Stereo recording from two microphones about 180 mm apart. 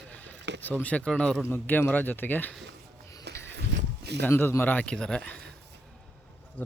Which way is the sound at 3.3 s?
70° right (ahead or behind).